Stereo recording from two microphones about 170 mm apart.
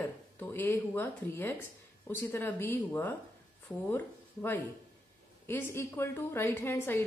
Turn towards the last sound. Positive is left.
turn(degrees=15)  # may be behind; listen again after turning